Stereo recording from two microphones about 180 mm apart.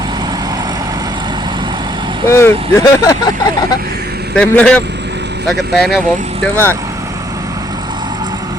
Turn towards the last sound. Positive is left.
turn(degrees=10)  # may be behind; listen again after turning